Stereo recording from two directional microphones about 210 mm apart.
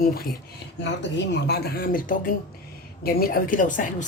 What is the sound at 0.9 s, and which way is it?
A woman's voice, 55° left (ahead or behind).